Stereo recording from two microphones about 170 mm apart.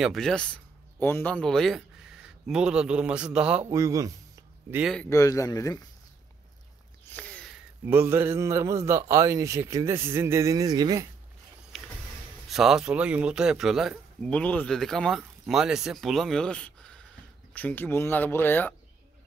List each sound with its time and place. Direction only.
0.0 s speech: centre (ahead or behind)
3.7 s speech: 20° right (ahead or behind)
5.1 s speech: 20° left (ahead or behind)
7.1 s a sound: 10° left (ahead or behind)
7.8 s a man's voice: 15° right (ahead or behind)
12.4 s speech: centre (ahead or behind)